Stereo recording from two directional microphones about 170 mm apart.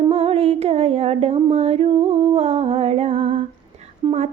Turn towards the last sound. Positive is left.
turn(degrees=-25)  # may be behind; listen again after turning